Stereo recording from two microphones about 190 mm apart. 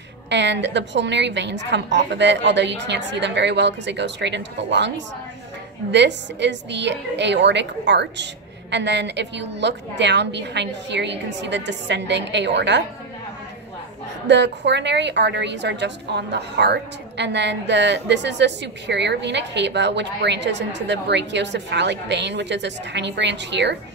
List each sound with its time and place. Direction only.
0.3 s a woman's voice: 65° right (ahead or behind)
14.2 s a woman's voice: 65° right (ahead or behind)